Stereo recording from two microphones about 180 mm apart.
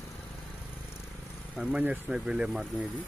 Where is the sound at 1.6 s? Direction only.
5° right (ahead or behind).